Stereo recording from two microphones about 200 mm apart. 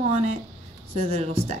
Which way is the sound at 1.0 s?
30° right (ahead or behind).